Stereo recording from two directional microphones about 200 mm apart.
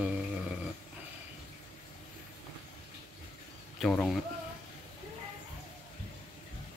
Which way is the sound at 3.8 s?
5° left (ahead or behind).